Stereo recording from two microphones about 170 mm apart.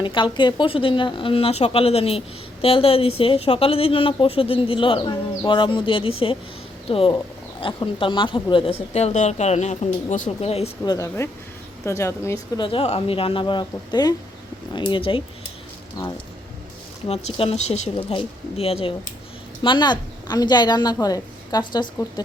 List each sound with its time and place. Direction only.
0.0 s a woman's voice: 30° left (ahead or behind)
10.8 s a woman's voice: 20° left (ahead or behind)
12.6 s a woman's voice: 35° left (ahead or behind)
17.1 s a woman's voice: 35° left (ahead or behind)